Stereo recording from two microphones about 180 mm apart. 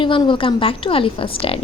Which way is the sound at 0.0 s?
25° left (ahead or behind).